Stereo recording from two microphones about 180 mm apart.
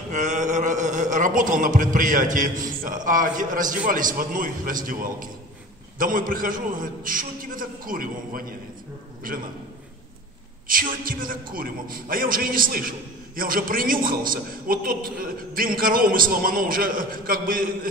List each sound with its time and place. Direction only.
0.1 s a man's voice: 45° right (ahead or behind)
10.7 s a man's voice: 50° right (ahead or behind)